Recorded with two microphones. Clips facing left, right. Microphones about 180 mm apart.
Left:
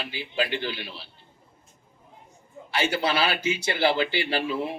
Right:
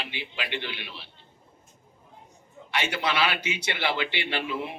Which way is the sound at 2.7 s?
30° left (ahead or behind).